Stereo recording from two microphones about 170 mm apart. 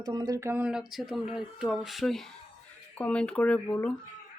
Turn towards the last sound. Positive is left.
turn(degrees=10)  # may be behind; listen again after turning